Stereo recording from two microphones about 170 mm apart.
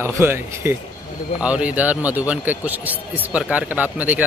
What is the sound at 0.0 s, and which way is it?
A man's voice, 15° right (ahead or behind).